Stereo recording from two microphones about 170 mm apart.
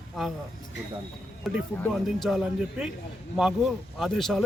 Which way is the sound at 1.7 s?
10° left (ahead or behind).